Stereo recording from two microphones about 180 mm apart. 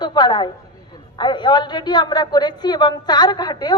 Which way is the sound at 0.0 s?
25° left (ahead or behind).